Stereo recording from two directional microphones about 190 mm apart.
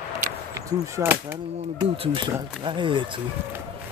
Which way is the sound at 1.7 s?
30° right (ahead or behind).